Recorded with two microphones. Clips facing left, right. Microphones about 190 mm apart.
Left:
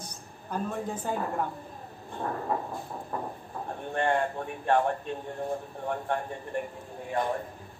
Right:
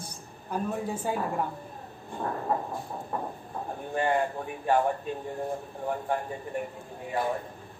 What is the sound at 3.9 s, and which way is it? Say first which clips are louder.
Speech: even; 5° right (ahead or behind).